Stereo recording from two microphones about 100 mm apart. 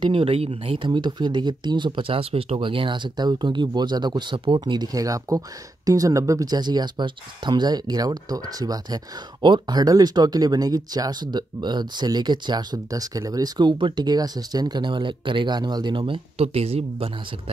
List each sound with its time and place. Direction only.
0.1 s speech: 75° right (ahead or behind)
0.7 s speech: 50° right (ahead or behind); by 17.1 s 90° right